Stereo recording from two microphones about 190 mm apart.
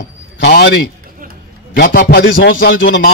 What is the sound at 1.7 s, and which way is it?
Speech, 50° left (ahead or behind).